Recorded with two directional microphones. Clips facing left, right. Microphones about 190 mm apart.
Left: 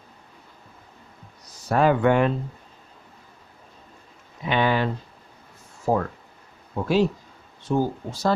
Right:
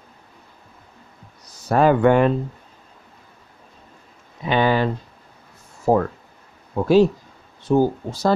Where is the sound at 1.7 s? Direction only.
45° right (ahead or behind).